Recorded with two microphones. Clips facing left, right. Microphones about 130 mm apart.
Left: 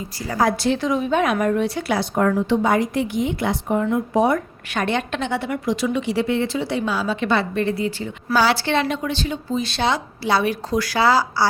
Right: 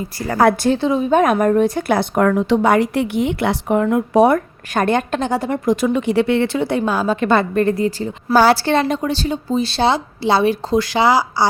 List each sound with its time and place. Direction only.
0.2 s speech: 60° right (ahead or behind)
0.7 s a woman's voice: 30° right (ahead or behind)
1.1 s a woman's voice: 45° right (ahead or behind)
2.1 s a woman's voice: 80° right
4.7 s a woman's voice: 45° right (ahead or behind); by 11.4 s 15° right (ahead or behind)